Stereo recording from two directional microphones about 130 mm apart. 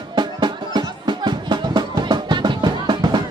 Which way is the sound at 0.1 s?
35° right (ahead or behind).